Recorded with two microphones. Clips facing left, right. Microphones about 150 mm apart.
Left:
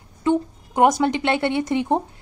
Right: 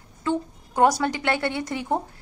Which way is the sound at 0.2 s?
20° left (ahead or behind).